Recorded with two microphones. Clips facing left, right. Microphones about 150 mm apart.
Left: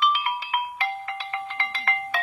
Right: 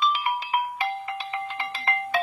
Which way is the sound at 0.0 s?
20° right (ahead or behind).